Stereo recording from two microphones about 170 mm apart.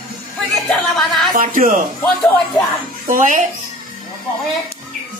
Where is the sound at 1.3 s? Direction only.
55° right (ahead or behind).